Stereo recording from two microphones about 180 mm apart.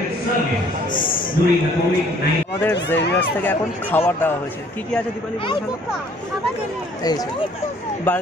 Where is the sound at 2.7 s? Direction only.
75° left (ahead or behind).